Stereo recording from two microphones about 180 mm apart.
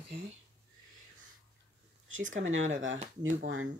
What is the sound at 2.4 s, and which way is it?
Speech, 90° right.